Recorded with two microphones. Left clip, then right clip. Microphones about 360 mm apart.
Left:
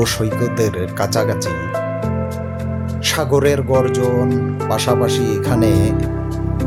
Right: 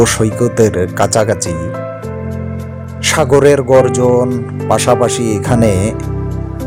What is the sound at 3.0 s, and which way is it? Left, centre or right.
Speech, left.